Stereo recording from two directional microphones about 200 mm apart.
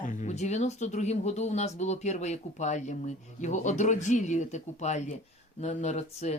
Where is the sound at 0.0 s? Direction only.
40° left (ahead or behind).